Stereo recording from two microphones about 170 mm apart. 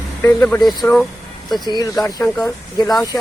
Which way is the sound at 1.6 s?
25° left (ahead or behind).